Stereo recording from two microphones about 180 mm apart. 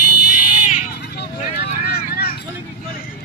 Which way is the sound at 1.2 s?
65° left (ahead or behind).